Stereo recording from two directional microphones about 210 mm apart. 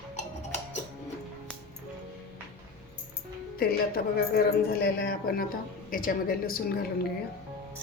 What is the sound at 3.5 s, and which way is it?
A woman's voice, 45° left (ahead or behind).